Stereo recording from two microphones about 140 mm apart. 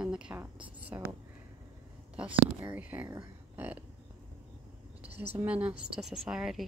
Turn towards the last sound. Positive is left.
turn(degrees=-5)  # may be behind; listen again after turning